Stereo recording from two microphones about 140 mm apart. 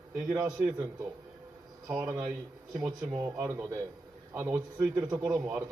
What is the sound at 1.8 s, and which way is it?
A man's voice, 25° right (ahead or behind).